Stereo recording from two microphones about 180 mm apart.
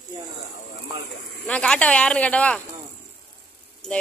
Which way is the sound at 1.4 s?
5° left (ahead or behind).